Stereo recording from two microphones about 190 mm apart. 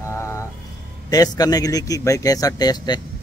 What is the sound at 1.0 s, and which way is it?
Speech, 20° left (ahead or behind).